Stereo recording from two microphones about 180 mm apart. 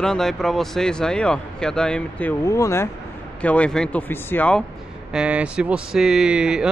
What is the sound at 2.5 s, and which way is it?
Speech, 15° left (ahead or behind).